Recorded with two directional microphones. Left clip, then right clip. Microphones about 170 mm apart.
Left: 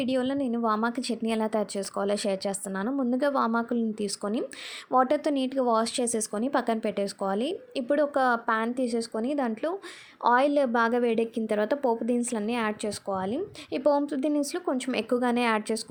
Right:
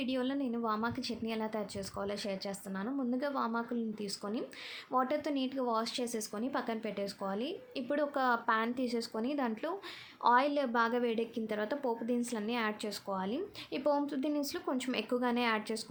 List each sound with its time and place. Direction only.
0.0 s a woman's voice: 40° left (ahead or behind)